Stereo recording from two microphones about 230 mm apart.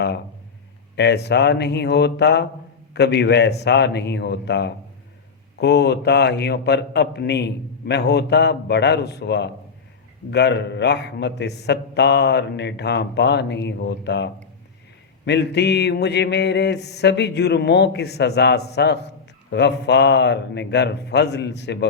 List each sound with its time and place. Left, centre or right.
0.9 s a man's voice: left